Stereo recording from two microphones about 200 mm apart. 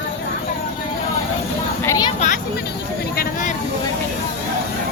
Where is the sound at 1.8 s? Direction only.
15° left (ahead or behind).